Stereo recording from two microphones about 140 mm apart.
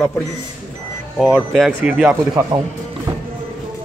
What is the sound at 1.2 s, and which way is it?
Speech, centre (ahead or behind).